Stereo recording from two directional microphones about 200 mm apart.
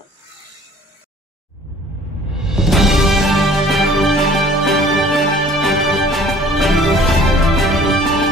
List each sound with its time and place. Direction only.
2.3 s music: 5° right (ahead or behind)